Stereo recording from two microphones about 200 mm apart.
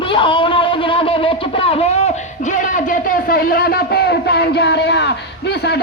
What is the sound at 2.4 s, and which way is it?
Speech, 40° left (ahead or behind).